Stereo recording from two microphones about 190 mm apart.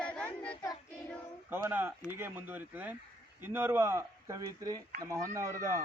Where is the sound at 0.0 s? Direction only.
5° left (ahead or behind).